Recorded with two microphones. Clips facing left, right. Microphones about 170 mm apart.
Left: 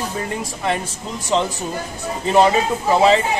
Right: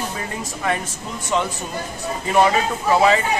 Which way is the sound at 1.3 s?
25° left (ahead or behind).